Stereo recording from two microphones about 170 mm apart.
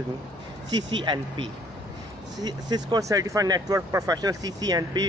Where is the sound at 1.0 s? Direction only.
25° right (ahead or behind).